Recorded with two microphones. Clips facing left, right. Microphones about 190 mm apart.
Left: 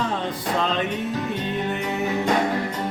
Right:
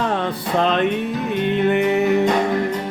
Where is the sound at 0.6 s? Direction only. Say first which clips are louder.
Right 8 dB; 60° right (ahead or behind).